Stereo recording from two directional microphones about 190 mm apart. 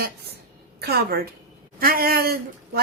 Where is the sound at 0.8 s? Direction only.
55° right (ahead or behind).